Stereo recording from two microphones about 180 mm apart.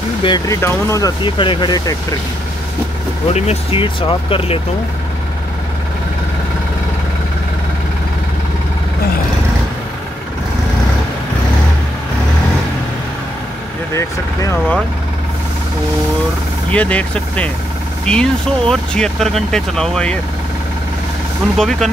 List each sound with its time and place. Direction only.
0.2 s speech: 25° left (ahead or behind)
3.3 s speech: 35° left (ahead or behind)
13.9 s speech: 15° left (ahead or behind)
16.7 s speech: 5° left (ahead or behind)
21.5 s speech: centre (ahead or behind)